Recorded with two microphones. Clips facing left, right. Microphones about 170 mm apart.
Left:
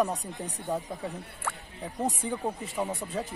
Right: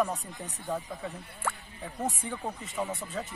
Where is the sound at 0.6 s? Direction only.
20° left (ahead or behind).